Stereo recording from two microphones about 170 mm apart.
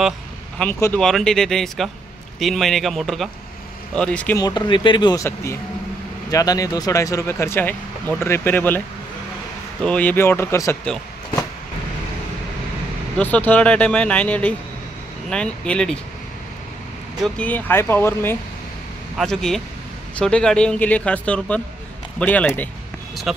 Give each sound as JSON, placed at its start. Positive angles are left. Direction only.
{"t": 0.6, "sound": "speech", "side_deg": 15}
{"t": 0.9, "sound": "speech", "side_deg": 5}
{"t": 4.4, "sound": "speech", "side_deg": 25}
{"t": 13.2, "sound": "speech", "side_deg": 10}
{"t": 17.2, "sound": "speech", "side_deg": 10}
{"t": 23.3, "sound": "speech", "side_deg": -5}